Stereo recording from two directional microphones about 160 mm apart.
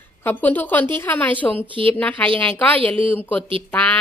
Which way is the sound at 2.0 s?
10° left (ahead or behind).